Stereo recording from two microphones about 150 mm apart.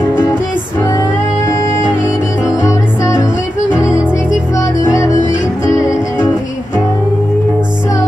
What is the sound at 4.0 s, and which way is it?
Music, 5° right (ahead or behind).